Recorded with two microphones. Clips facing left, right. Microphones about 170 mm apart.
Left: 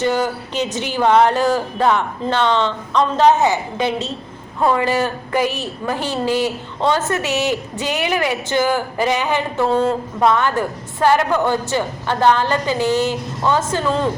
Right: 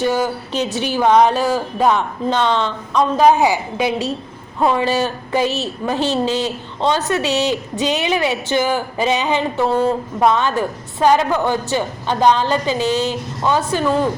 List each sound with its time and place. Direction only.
0.0 s a woman's voice: 15° right (ahead or behind)
0.5 s a woman's voice: 15° left (ahead or behind)
0.9 s a woman's voice: 15° right (ahead or behind)
6.8 s a woman's voice: 20° right (ahead or behind)